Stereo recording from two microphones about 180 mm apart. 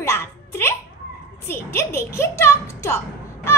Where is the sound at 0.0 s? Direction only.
15° left (ahead or behind).